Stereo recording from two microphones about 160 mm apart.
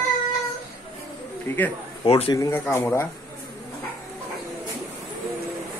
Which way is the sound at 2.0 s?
35° left (ahead or behind).